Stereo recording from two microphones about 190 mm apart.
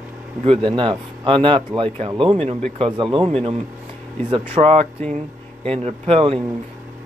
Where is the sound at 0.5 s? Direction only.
25° right (ahead or behind).